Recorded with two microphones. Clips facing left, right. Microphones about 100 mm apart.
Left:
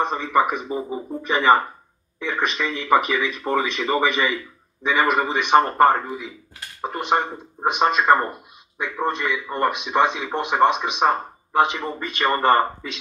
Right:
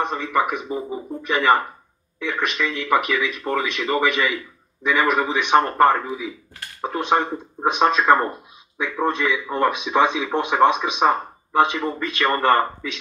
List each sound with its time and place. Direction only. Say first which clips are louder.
0.0 s a man's voice: left 2 dB; centre (ahead or behind)
11.9 s speech: right 1 dB; 20° left (ahead or behind)